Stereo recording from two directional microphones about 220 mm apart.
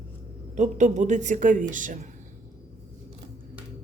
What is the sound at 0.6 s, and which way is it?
A woman's voice, 35° right (ahead or behind).